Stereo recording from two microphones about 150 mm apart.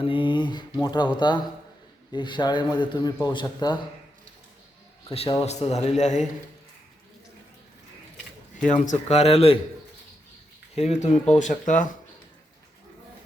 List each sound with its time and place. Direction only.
0.0 s mantra: 35° left (ahead or behind)
2.1 s speech: 30° left (ahead or behind)
5.0 s speech: 40° left (ahead or behind)
8.6 s speech: 55° left (ahead or behind); by 9.6 s 40° left (ahead or behind)
10.8 s speech: 45° left (ahead or behind)